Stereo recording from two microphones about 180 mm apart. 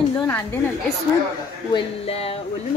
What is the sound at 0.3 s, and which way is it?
Speech, 10° left (ahead or behind).